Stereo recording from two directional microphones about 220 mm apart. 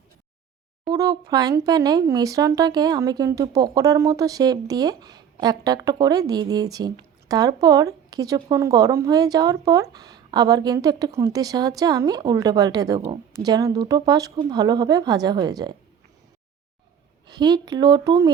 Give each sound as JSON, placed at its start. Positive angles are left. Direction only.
{"t": 0.9, "sound": "speech", "side_deg": -15}
{"t": 17.2, "sound": "a woman's voice", "side_deg": -20}